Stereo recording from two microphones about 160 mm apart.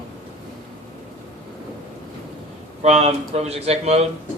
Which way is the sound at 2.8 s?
40° right (ahead or behind).